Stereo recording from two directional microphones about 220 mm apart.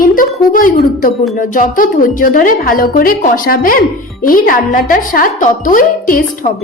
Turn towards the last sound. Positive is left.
turn(degrees=40)  # may be behind; listen again after turning